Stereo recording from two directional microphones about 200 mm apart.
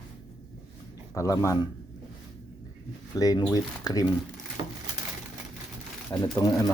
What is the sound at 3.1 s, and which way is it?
Speech, 20° left (ahead or behind).